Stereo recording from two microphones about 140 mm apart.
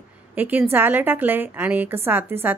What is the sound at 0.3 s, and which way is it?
A woman's voice, 10° right (ahead or behind).